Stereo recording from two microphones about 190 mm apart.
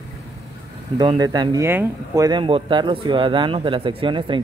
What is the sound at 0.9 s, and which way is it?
Speech, 20° right (ahead or behind).